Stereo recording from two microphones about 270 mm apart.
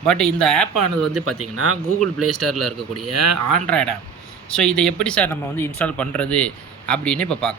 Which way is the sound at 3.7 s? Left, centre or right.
Centre.